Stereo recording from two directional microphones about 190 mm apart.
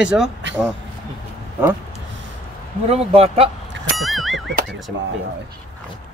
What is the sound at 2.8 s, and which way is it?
Speech, 30° right (ahead or behind).